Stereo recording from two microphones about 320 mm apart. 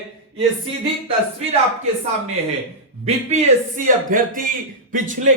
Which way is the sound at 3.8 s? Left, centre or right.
Right.